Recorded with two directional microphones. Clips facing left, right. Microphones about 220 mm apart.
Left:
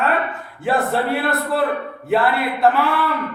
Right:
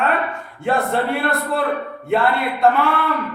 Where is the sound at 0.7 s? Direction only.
5° left (ahead or behind).